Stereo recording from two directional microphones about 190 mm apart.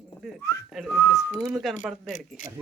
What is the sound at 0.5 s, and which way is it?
Whistling, 15° left (ahead or behind).